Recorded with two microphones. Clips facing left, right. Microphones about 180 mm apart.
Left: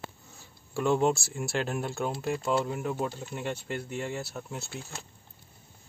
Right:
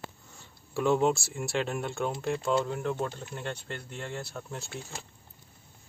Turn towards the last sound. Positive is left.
turn(degrees=5)  # may be behind; listen again after turning